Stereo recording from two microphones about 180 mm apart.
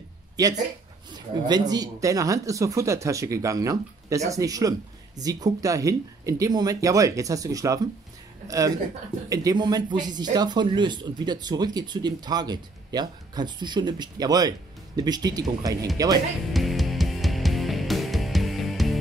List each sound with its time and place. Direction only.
0.4 s speech: 20° right (ahead or behind)
16.5 s music: centre (ahead or behind)